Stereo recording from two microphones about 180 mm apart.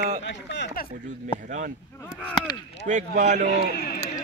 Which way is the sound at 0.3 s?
75° left (ahead or behind).